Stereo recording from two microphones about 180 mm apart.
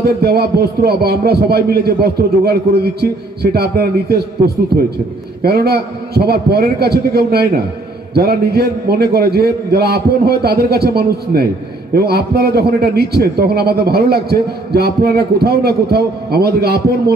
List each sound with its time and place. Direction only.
0.0 s a man's voice: 60° right (ahead or behind)
5.4 s a man's voice: 60° right (ahead or behind)